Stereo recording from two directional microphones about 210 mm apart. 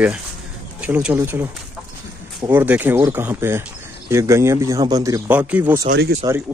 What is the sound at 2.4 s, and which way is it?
Speech, 10° right (ahead or behind).